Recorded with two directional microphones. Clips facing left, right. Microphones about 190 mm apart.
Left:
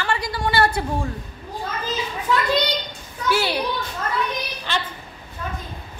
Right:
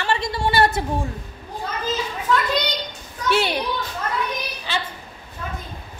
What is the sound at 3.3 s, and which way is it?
Speech, 20° right (ahead or behind).